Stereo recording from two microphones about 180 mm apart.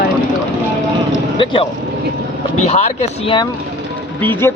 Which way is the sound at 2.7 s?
35° left (ahead or behind).